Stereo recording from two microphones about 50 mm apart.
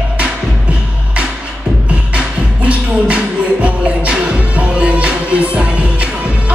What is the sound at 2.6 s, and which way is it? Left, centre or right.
Music, right.